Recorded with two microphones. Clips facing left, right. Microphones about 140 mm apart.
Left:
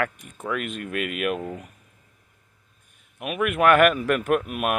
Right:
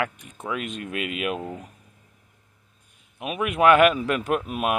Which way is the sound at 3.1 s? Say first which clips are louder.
Left 1 dB; 30° right (ahead or behind).